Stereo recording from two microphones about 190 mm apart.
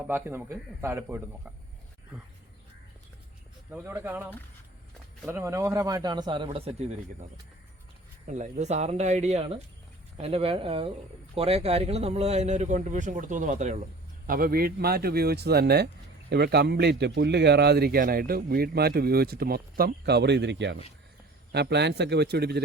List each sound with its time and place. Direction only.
0.1 s a man's voice: 10° right (ahead or behind)
3.7 s a man's voice: 10° right (ahead or behind); by 6.9 s 35° right (ahead or behind)
8.3 s speech: 40° right (ahead or behind); by 22.6 s 60° right (ahead or behind)